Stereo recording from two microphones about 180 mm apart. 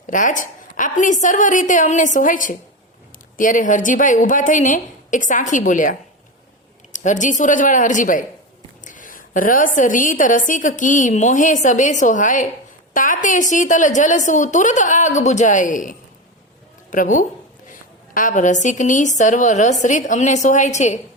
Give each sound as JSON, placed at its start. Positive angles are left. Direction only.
{"t": 0.1, "sound": "a woman's voice", "side_deg": 45}